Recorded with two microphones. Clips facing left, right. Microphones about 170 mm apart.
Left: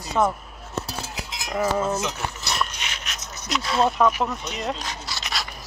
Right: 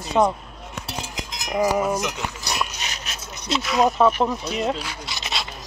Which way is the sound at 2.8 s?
35° right (ahead or behind).